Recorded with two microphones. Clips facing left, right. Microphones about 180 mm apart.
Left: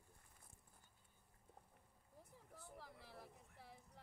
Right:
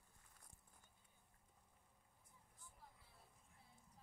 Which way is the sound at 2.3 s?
75° left (ahead or behind).